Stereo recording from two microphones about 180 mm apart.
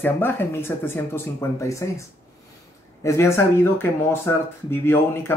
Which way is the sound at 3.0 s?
15° left (ahead or behind).